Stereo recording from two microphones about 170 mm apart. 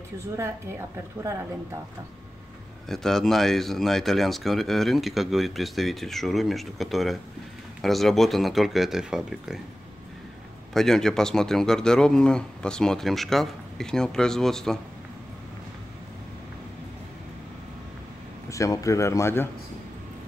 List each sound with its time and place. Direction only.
0.4 s a woman's voice: 15° right (ahead or behind)
2.9 s speech: centre (ahead or behind)
10.7 s speech: centre (ahead or behind)
18.5 s speech: 20° left (ahead or behind)